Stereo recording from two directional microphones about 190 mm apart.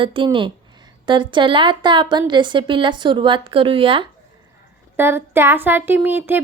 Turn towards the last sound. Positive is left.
turn(degrees=-10)  # may be behind; listen again after turning